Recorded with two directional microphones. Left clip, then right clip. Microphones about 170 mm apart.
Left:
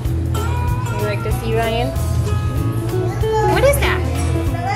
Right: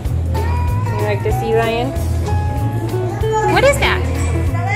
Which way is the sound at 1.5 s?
25° right (ahead or behind).